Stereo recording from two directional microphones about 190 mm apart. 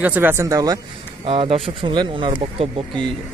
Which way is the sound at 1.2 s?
30° right (ahead or behind).